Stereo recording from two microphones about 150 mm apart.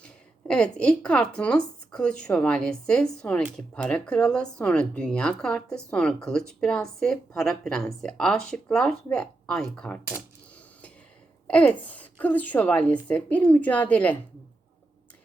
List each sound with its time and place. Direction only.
0.0 s speech: 5° left (ahead or behind)
11.4 s speech: 10° left (ahead or behind)